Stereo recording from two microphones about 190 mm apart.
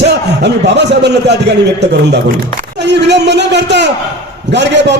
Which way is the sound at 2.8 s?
65° right (ahead or behind).